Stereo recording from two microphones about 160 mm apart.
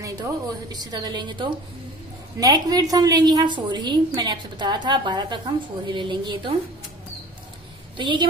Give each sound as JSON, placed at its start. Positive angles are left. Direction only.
{"t": 0.7, "sound": "a woman's voice", "side_deg": -25}
{"t": 8.0, "sound": "a woman's voice", "side_deg": -30}